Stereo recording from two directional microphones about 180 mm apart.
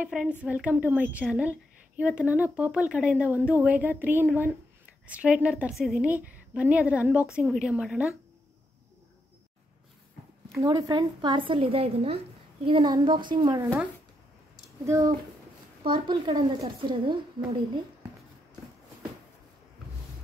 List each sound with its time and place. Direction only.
0.0 s a woman's voice: 5° right (ahead or behind)
10.6 s a woman's voice: 20° right (ahead or behind)
14.9 s a woman's voice: 20° right (ahead or behind)